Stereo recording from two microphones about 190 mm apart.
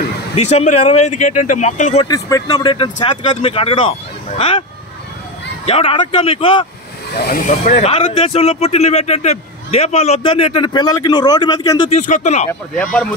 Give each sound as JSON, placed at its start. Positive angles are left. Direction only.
{"t": 0.4, "sound": "speech", "side_deg": 35}
{"t": 2.0, "sound": "speech", "side_deg": 20}
{"t": 5.7, "sound": "speech", "side_deg": 30}
{"t": 7.2, "sound": "speech", "side_deg": 50}
{"t": 11.9, "sound": "speech", "side_deg": 40}
{"t": 12.7, "sound": "speech", "side_deg": 5}